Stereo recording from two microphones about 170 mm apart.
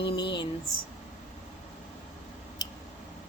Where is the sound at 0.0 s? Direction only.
30° left (ahead or behind).